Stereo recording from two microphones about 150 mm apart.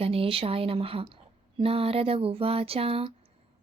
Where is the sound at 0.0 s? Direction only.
40° right (ahead or behind).